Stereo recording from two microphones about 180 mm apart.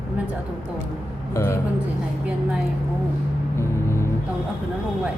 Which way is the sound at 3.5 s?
15° left (ahead or behind).